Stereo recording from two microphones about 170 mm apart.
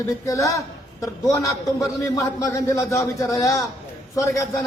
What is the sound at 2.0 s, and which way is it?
A man's voice, 20° left (ahead or behind).